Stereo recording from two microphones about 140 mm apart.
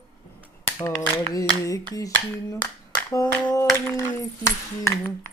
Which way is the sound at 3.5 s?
20° left (ahead or behind).